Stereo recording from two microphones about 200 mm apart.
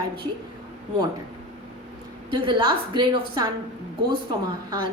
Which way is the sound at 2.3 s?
25° right (ahead or behind).